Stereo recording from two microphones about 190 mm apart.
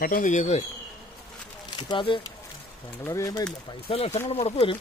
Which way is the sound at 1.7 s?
25° left (ahead or behind).